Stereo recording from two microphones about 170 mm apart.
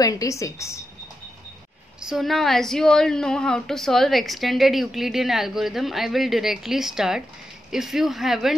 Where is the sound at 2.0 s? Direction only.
Centre (ahead or behind).